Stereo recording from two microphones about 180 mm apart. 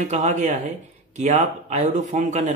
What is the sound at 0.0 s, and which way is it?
Speech, 40° right (ahead or behind).